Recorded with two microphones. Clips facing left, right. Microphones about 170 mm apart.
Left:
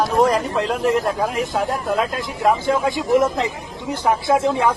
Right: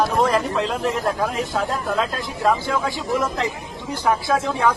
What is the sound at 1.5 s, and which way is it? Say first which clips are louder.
Speech: left 2 dB; 20° left (ahead or behind).